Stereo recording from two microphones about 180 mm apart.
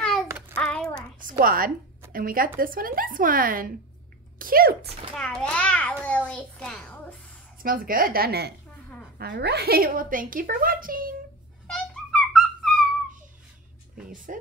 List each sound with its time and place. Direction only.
0.0 s child singing: centre (ahead or behind)
1.4 s a woman's voice: 50° right (ahead or behind)
5.1 s a child's voice: 5° left (ahead or behind)
7.6 s a woman's voice: 55° right (ahead or behind)
11.6 s cat: 5° left (ahead or behind)
14.1 s a woman's voice: 45° right (ahead or behind)